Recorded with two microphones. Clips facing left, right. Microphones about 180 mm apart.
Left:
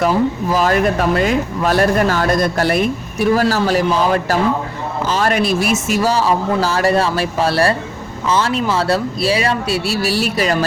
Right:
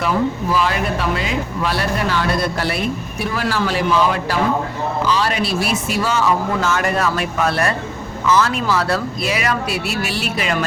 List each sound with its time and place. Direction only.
0.5 s a man's voice: 45° left (ahead or behind)